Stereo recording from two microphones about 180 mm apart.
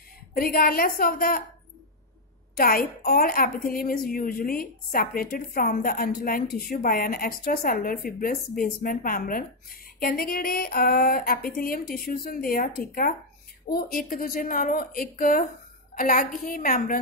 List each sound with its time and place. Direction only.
0.3 s a woman's voice: 55° left (ahead or behind)
2.5 s a woman's voice: 55° left (ahead or behind)